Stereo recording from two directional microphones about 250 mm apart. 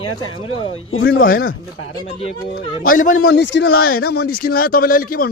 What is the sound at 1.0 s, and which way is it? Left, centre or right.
Speech, left.